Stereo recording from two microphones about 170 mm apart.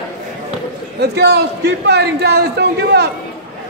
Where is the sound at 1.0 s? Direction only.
75° right (ahead or behind).